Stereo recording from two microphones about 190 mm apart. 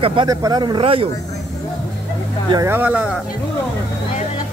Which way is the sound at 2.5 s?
15° right (ahead or behind).